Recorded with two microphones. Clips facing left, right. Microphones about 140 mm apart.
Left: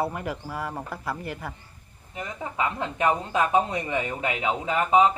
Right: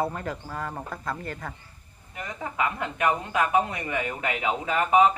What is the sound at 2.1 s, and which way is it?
A woman's voice, 20° left (ahead or behind).